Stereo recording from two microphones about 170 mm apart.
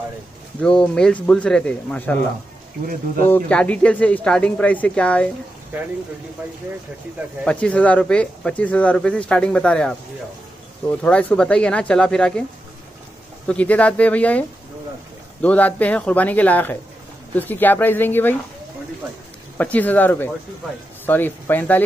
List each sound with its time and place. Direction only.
0.6 s speech: 5° left (ahead or behind)
3.3 s speech: 10° left (ahead or behind)
5.7 s speech: 10° right (ahead or behind)
7.4 s speech: 5° left (ahead or behind)
13.5 s speech: 10° left (ahead or behind)
15.4 s speech: 10° left (ahead or behind)
19.5 s speech: 10° left (ahead or behind)